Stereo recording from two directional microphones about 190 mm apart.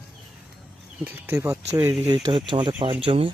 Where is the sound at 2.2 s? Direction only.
25° right (ahead or behind).